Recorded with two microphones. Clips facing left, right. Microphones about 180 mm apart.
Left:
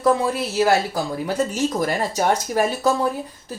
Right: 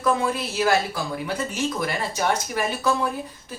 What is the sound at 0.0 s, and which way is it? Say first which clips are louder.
Speech: left 4 dB; 35° left (ahead or behind).